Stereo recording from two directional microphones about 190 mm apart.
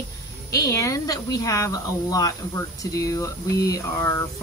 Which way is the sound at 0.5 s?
15° left (ahead or behind).